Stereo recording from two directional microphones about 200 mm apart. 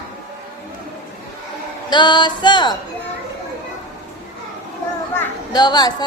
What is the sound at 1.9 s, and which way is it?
Speech, 20° left (ahead or behind).